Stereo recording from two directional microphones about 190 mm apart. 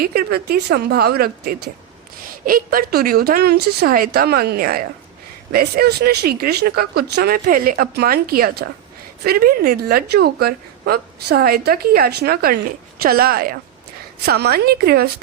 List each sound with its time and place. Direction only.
0.0 s a woman's voice: 55° right (ahead or behind)